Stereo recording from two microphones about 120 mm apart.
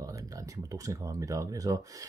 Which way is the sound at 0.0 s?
30° right (ahead or behind).